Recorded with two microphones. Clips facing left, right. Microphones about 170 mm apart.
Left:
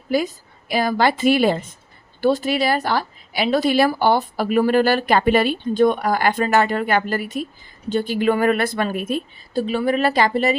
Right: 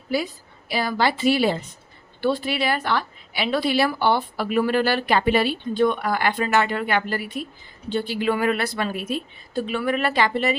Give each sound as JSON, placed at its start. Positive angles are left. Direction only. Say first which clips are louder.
{"t": 0.1, "sound": "a woman's voice", "louder": "left 4 dB", "side_deg": 45}
{"t": 9.5, "sound": "speech", "louder": "left 4 dB", "side_deg": 35}